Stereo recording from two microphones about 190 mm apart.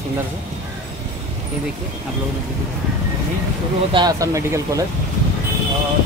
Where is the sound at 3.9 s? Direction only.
20° right (ahead or behind).